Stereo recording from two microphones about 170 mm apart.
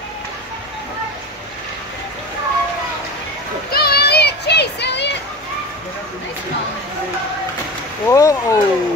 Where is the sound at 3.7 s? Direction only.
65° left (ahead or behind); by 5.1 s 90° left.